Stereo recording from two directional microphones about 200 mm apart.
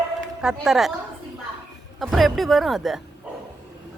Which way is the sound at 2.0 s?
Centre (ahead or behind).